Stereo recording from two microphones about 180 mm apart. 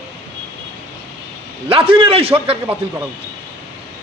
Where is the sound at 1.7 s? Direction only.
30° right (ahead or behind).